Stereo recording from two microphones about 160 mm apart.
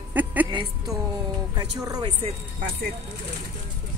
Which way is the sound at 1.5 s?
25° right (ahead or behind).